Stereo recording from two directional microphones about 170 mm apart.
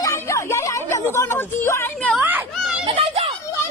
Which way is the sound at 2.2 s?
10° right (ahead or behind).